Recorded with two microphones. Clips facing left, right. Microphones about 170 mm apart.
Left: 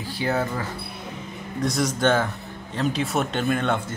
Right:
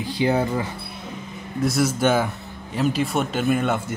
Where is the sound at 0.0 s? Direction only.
15° right (ahead or behind).